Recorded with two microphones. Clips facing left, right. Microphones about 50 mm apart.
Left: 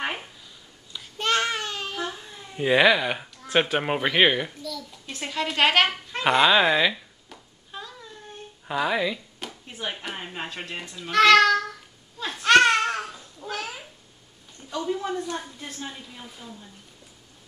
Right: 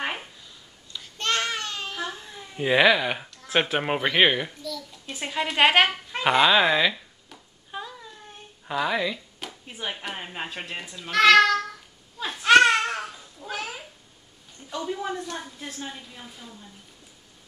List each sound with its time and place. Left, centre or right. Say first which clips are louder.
0.0 s a sound: even; centre
0.9 s babbling: left 2 dB; centre
6.1 s speech: even; centre
7.7 s a sound: right 3 dB; centre
8.6 s speech: left 1 dB; centre
12.2 s babbling: right 1 dB; centre
14.7 s speech: left 2 dB; centre